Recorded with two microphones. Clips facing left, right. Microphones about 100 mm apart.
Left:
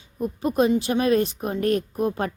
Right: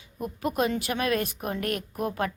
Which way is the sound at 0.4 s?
25° left (ahead or behind).